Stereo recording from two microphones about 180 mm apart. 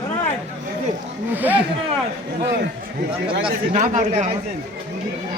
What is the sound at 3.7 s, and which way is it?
Speech, 45° right (ahead or behind).